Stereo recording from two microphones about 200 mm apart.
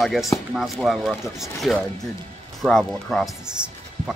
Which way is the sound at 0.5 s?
Centre (ahead or behind).